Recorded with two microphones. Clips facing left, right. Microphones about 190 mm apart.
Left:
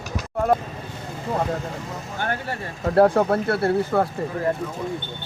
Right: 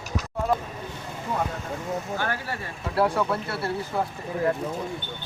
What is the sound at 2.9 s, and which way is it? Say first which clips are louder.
Speech: left 7 dB; 50° left (ahead or behind).